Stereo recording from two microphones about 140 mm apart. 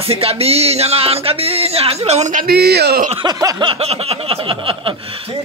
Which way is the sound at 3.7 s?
45° right (ahead or behind).